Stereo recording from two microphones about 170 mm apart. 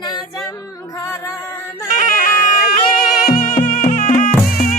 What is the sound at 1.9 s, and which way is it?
Music, 50° left (ahead or behind).